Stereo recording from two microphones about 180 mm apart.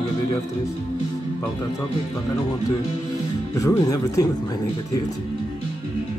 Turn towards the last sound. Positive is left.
turn(degrees=20)  # may be behind; listen again after turning